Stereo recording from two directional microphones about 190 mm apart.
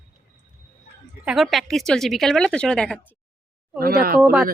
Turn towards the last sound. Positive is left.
turn(degrees=-5)  # may be behind; listen again after turning